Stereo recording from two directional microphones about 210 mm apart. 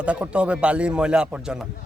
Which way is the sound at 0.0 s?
5° right (ahead or behind).